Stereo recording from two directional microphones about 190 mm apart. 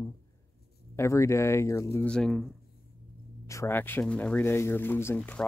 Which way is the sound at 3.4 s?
15° left (ahead or behind).